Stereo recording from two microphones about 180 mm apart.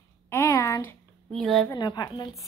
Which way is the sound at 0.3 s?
15° left (ahead or behind).